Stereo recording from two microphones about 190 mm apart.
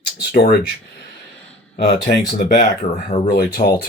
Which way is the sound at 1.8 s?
60° left (ahead or behind).